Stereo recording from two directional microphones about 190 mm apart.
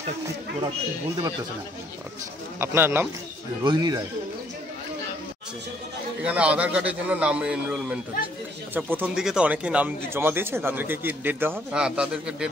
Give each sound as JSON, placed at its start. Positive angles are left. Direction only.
{"t": 2.6, "sound": "a man's voice", "side_deg": -10}
{"t": 6.2, "sound": "a man's voice", "side_deg": -5}